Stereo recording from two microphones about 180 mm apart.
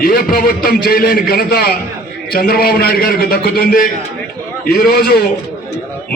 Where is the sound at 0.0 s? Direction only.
55° left (ahead or behind).